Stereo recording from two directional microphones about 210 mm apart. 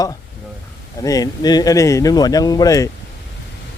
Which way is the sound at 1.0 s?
15° left (ahead or behind).